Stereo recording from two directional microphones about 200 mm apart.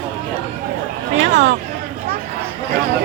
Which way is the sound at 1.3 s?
60° right (ahead or behind).